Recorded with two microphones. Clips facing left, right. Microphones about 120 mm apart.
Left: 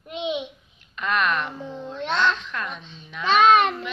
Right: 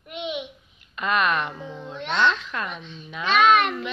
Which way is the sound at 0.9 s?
5° right (ahead or behind).